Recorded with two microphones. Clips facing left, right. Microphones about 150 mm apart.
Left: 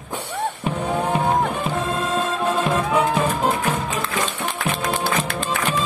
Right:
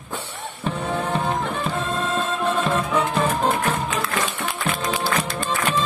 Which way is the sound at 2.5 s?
10° left (ahead or behind).